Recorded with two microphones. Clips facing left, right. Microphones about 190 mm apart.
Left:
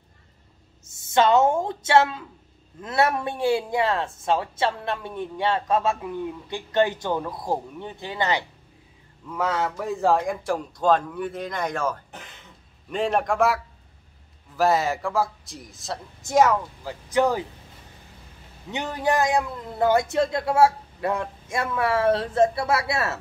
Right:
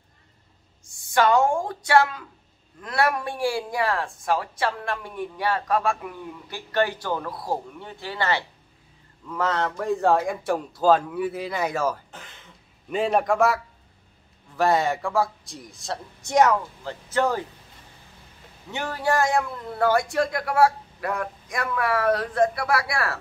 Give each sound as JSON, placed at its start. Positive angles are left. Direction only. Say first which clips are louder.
{"t": 0.9, "sound": "a man's voice", "louder": "left 1 dB", "side_deg": 25}
{"t": 14.6, "sound": "a man's voice", "louder": "even", "side_deg": 0}
{"t": 17.1, "sound": "speech", "louder": "left 2 dB", "side_deg": 15}
{"t": 18.7, "sound": "speech", "louder": "left 1 dB", "side_deg": 20}